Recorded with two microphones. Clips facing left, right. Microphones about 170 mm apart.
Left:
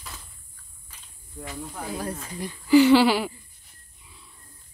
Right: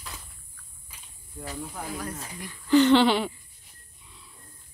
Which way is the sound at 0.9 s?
10° right (ahead or behind).